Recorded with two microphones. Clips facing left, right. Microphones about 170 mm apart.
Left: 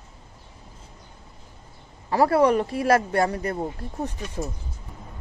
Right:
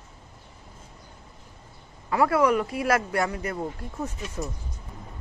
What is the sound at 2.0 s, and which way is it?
Speech, 35° left (ahead or behind).